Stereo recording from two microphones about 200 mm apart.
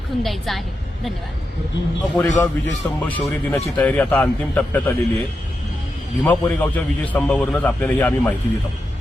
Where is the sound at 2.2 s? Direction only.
15° left (ahead or behind).